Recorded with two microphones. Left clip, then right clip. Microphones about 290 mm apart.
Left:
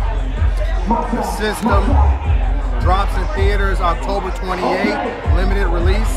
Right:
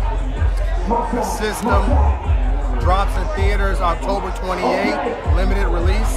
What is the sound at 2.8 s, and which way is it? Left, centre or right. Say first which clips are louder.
Speech: left 1 dB; centre.